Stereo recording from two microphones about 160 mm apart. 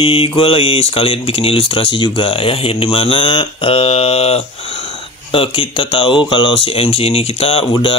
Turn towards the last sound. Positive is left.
turn(degrees=35)  # may be behind; listen again after turning